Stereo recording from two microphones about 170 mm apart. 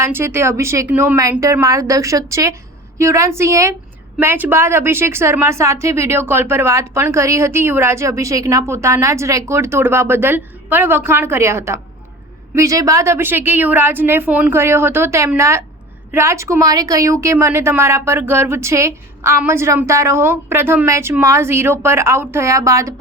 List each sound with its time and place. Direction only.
0.0 s a woman's voice: 15° right (ahead or behind)